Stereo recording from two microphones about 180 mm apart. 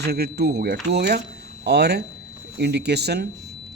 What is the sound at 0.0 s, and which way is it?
Speech, 65° right (ahead or behind).